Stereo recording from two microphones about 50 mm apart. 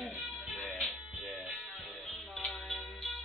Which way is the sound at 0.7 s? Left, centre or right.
Centre.